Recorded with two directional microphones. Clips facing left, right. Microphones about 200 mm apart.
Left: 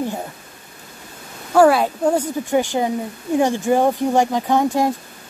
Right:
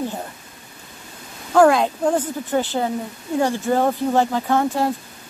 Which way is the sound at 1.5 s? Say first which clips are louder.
Left 1 dB; 5° left (ahead or behind).